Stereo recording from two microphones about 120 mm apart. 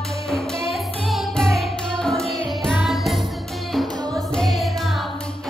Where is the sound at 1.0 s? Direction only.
Centre (ahead or behind).